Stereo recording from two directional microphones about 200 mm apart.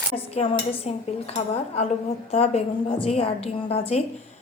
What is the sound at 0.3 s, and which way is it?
A woman's voice, 30° left (ahead or behind).